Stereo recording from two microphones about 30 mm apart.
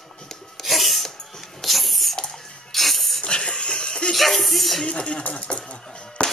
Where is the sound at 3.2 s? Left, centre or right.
Left.